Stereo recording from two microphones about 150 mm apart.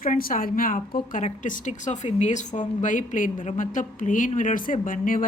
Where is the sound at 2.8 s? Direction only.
60° left (ahead or behind).